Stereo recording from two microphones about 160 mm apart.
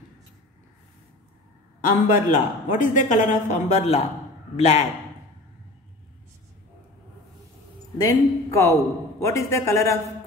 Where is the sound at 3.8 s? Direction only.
40° left (ahead or behind).